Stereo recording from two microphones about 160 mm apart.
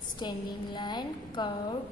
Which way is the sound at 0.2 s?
25° left (ahead or behind).